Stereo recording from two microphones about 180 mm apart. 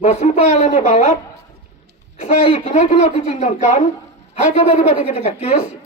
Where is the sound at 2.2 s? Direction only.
40° left (ahead or behind).